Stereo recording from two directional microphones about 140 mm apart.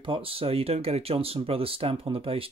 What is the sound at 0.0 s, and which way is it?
Speech, 40° right (ahead or behind).